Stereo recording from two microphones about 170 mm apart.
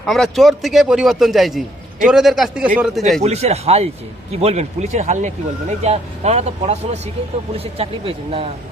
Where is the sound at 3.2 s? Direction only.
40° right (ahead or behind).